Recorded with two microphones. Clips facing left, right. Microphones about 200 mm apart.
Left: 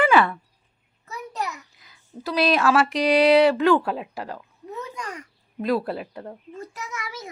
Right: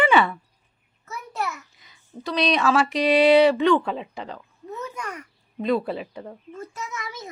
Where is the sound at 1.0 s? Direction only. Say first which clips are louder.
Right 1 dB; 15° left (ahead or behind).